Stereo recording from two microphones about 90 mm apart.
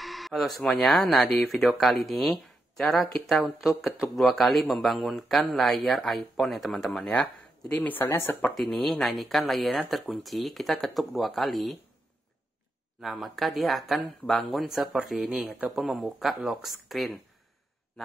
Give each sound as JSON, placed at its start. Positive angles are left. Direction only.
{"t": 0.0, "sound": "speech", "side_deg": 0}
{"t": 8.5, "sound": "speech", "side_deg": 0}
{"t": 13.0, "sound": "speech", "side_deg": 0}